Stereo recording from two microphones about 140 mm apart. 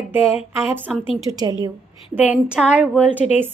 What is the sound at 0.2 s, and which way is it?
Speech, 45° left (ahead or behind).